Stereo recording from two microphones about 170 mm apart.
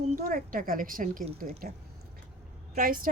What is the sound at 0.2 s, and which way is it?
Speech, 55° right (ahead or behind).